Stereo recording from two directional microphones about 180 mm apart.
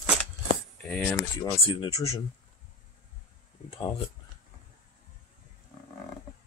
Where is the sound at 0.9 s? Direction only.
5° left (ahead or behind).